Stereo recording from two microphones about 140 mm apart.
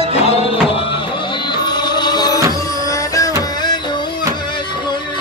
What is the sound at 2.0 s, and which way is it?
Music, 30° left (ahead or behind).